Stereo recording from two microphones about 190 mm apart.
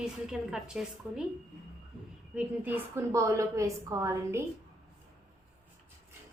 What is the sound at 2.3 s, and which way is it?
A woman's voice, 10° right (ahead or behind).